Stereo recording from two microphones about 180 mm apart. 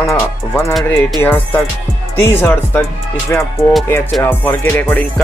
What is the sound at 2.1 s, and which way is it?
Speech, 10° left (ahead or behind).